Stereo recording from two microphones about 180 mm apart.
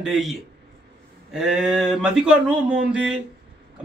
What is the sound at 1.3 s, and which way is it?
A man's voice, 5° right (ahead or behind).